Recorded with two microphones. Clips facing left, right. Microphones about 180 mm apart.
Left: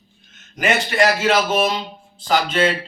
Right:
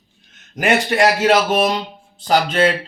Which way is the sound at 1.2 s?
45° right (ahead or behind).